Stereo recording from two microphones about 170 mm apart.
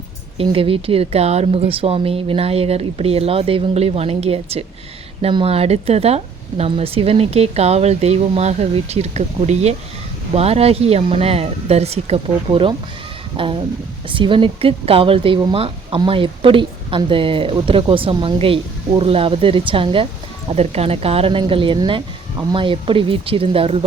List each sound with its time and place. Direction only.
0.3 s a woman's voice: 35° right (ahead or behind)